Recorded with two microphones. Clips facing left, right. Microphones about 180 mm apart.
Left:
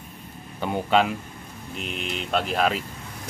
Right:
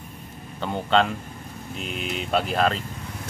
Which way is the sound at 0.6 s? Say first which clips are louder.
Even; 10° left (ahead or behind).